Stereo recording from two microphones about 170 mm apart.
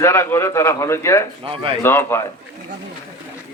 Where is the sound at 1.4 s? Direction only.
35° right (ahead or behind).